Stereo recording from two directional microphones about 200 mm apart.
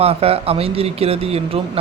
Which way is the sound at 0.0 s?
30° right (ahead or behind).